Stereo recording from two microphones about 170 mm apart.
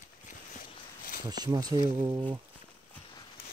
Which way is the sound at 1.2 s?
25° right (ahead or behind).